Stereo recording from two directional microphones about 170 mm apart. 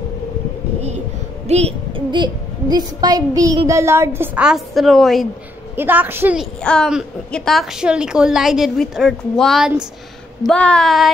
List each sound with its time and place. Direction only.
0.7 s child singing: 40° right (ahead or behind)
1.5 s a sound: 40° right (ahead or behind)
2.0 s child singing: 25° right (ahead or behind); by 5.2 s centre (ahead or behind)
5.8 s child singing: 10° right (ahead or behind)
6.6 s a woman's voice: 5° left (ahead or behind)